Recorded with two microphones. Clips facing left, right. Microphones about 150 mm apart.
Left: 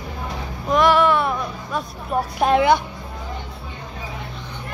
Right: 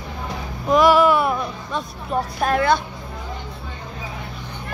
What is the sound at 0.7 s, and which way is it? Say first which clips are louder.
Music: right 2 dB; 5° right (ahead or behind).